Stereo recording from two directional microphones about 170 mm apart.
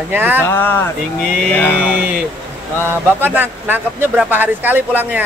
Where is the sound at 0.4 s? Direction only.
10° left (ahead or behind).